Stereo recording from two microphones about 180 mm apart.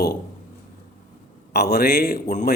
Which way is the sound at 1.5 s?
60° left (ahead or behind).